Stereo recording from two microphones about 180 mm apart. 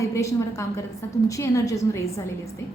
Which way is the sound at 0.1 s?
15° left (ahead or behind).